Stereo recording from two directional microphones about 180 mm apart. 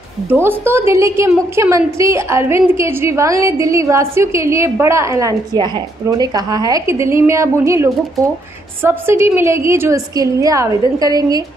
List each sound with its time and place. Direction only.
0.3 s a woman's voice: 10° right (ahead or behind)